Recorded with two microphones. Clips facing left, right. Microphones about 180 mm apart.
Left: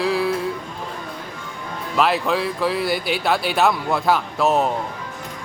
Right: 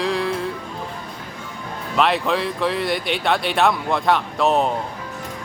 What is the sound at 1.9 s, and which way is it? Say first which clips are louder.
Speech: even; centre (ahead or behind).